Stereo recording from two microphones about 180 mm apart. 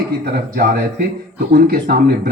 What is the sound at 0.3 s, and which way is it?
Speech, 60° right (ahead or behind).